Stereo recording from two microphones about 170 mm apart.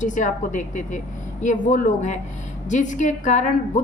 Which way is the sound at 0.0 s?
50° left (ahead or behind).